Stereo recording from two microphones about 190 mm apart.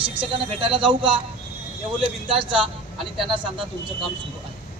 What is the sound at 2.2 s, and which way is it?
Speech, 25° right (ahead or behind).